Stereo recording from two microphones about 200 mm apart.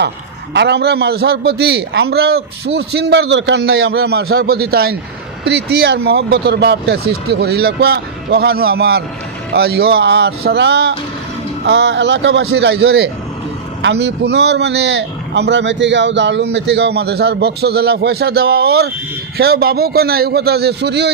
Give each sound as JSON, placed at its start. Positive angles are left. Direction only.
{"t": 0.5, "sound": "a man's voice", "side_deg": -55}